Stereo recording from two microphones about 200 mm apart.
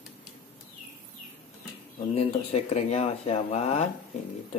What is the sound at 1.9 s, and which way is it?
Speech, 30° left (ahead or behind).